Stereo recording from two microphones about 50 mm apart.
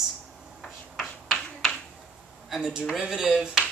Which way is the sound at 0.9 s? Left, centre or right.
Centre.